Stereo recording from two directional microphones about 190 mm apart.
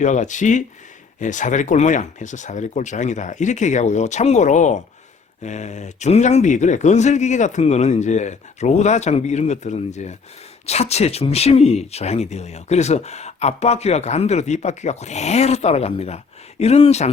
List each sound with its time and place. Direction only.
0.0 s speech: 40° left (ahead or behind)